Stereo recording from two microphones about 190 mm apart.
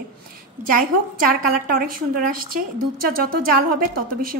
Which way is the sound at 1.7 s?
50° right (ahead or behind).